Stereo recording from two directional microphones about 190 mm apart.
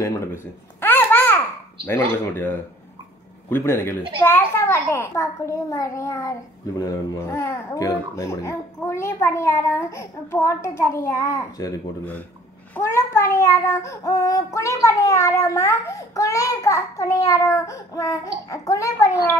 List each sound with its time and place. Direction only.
0.0 s babbling: 15° left (ahead or behind)
1.9 s speech: 10° left (ahead or behind)
12.7 s speech: 15° left (ahead or behind)